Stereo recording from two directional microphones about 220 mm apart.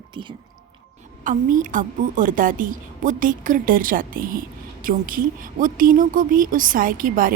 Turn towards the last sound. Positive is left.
turn(degrees=-40)  # may be behind; listen again after turning